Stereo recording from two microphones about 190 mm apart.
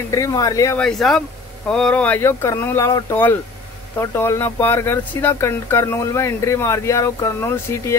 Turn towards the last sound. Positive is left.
turn(degrees=15)  # may be behind; listen again after turning